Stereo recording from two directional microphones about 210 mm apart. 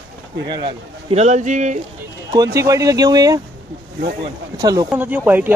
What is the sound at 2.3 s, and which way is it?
Speech, 15° right (ahead or behind).